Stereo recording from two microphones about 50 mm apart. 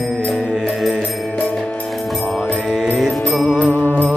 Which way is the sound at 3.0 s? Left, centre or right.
Centre.